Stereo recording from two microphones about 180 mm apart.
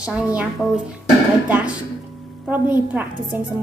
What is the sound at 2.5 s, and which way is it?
Speech, 10° right (ahead or behind).